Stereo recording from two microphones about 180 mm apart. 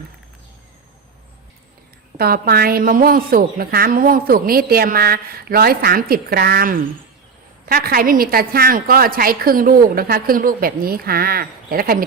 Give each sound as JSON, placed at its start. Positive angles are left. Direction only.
{"t": 2.1, "sound": "a woman's voice", "side_deg": -55}